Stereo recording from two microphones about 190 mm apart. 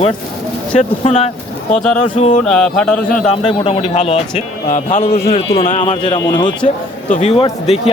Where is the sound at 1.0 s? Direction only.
35° left (ahead or behind).